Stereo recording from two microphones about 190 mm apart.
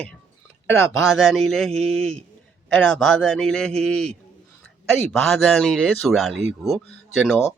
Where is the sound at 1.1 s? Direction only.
Centre (ahead or behind).